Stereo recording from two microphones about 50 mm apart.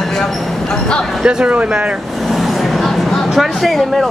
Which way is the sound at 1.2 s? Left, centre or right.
Right.